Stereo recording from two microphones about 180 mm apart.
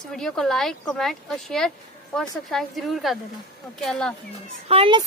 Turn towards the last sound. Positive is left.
turn(degrees=-30)  # may be behind; listen again after turning